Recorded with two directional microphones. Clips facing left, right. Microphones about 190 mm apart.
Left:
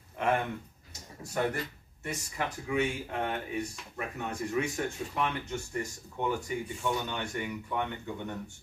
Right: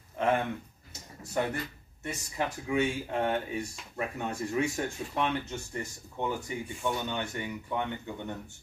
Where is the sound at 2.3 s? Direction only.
25° right (ahead or behind).